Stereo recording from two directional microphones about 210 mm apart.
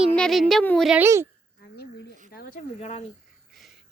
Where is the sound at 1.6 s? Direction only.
50° left (ahead or behind).